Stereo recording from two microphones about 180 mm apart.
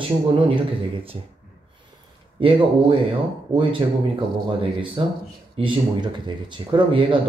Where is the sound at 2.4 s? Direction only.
30° right (ahead or behind).